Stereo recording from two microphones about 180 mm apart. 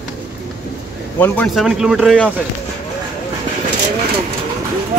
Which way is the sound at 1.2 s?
10° left (ahead or behind).